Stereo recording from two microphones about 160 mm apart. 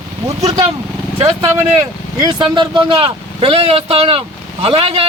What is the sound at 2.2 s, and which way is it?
Speech, 25° right (ahead or behind).